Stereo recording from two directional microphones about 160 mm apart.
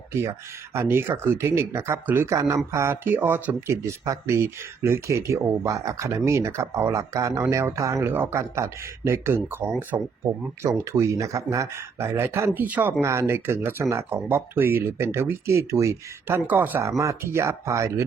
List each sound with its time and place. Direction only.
0.1 s speech: 15° right (ahead or behind)